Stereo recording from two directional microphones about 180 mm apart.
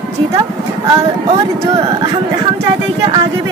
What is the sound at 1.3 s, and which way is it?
Speech, 25° right (ahead or behind).